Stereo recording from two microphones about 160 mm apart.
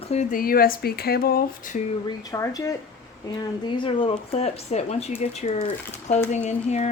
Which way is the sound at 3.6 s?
30° left (ahead or behind).